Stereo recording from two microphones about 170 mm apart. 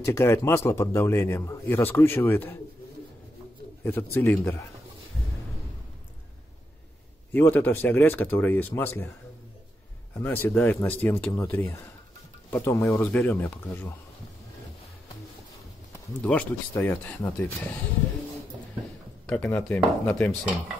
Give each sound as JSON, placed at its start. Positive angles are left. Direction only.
{"t": 0.0, "sound": "speech", "side_deg": 15}
{"t": 3.8, "sound": "speech", "side_deg": 15}
{"t": 7.3, "sound": "speech", "side_deg": 10}
{"t": 10.1, "sound": "speech", "side_deg": 10}
{"t": 15.9, "sound": "speech", "side_deg": 10}
{"t": 19.2, "sound": "speech", "side_deg": 5}